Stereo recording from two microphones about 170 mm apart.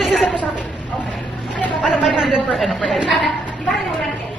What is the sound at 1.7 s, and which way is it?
A woman's voice, centre (ahead or behind).